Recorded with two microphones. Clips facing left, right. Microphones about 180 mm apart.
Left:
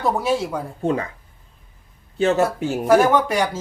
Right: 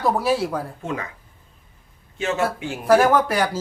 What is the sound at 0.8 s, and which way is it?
Speech, 35° left (ahead or behind).